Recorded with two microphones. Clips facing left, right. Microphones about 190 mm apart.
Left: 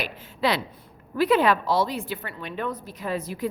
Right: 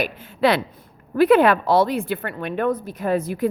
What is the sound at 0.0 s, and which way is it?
Speech, 55° right (ahead or behind).